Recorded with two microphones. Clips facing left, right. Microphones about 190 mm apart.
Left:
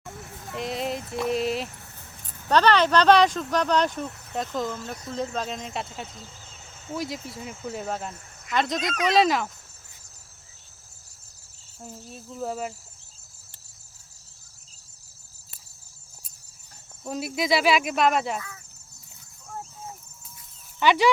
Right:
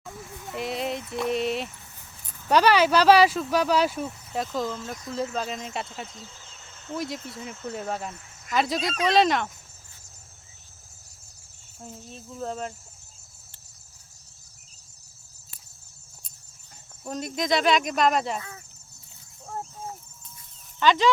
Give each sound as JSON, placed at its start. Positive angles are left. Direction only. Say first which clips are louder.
{"t": 0.5, "sound": "a sound", "louder": "even", "side_deg": 0}
{"t": 2.5, "sound": "speech", "louder": "even", "side_deg": -10}
{"t": 11.8, "sound": "speech", "louder": "left 1 dB", "side_deg": 5}
{"t": 17.0, "sound": "speech", "louder": "left 1 dB", "side_deg": 5}
{"t": 18.3, "sound": "speech", "louder": "even", "side_deg": -30}
{"t": 20.7, "sound": "speech", "louder": "left 1 dB", "side_deg": 10}